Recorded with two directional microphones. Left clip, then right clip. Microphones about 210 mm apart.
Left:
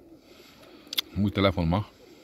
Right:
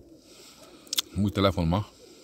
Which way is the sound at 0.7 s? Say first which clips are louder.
Even; centre (ahead or behind).